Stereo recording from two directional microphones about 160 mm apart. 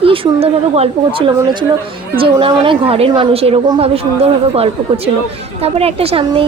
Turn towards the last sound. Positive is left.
turn(degrees=-35)  # may be behind; listen again after turning